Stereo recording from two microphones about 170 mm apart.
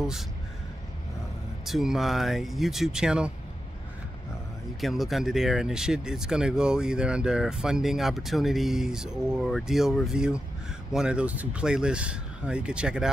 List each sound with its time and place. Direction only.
1.7 s speech: centre (ahead or behind)
4.7 s speech: centre (ahead or behind)